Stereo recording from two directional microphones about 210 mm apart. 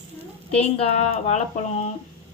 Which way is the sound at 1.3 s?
35° left (ahead or behind).